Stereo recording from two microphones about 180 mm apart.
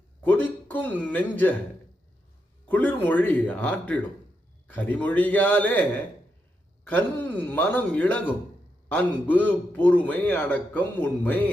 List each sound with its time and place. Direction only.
0.2 s a man's voice: 10° left (ahead or behind)
2.6 s a man's voice: 10° left (ahead or behind)